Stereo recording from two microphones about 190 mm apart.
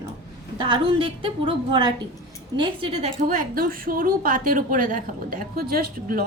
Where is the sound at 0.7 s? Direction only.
25° right (ahead or behind).